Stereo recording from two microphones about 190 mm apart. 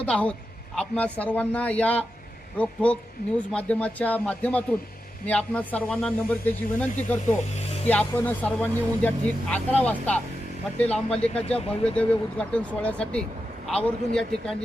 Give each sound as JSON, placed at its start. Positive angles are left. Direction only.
{"t": 0.0, "sound": "speech", "side_deg": 5}
{"t": 11.4, "sound": "speech", "side_deg": 30}
{"t": 11.9, "sound": "speech", "side_deg": 5}